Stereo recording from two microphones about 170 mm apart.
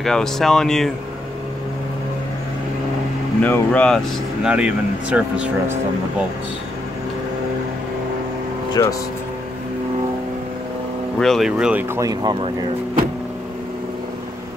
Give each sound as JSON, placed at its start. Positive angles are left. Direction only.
{"t": 0.0, "sound": "speech", "side_deg": 0}
{"t": 3.4, "sound": "speech", "side_deg": 10}
{"t": 4.4, "sound": "speech", "side_deg": -5}
{"t": 8.8, "sound": "speech", "side_deg": 20}
{"t": 11.1, "sound": "speech", "side_deg": 0}
{"t": 12.0, "sound": "speech", "side_deg": -20}